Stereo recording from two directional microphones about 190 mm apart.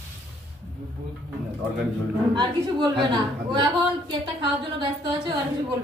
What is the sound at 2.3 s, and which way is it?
A woman's voice, 25° right (ahead or behind).